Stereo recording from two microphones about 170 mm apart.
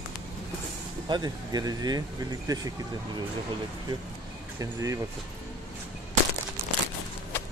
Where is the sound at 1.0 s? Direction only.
25° right (ahead or behind).